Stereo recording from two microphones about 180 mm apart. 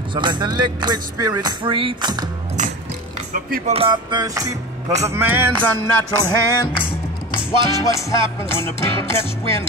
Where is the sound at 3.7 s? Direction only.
30° right (ahead or behind).